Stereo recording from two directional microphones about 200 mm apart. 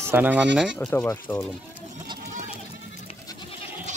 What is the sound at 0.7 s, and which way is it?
Speech, 10° left (ahead or behind).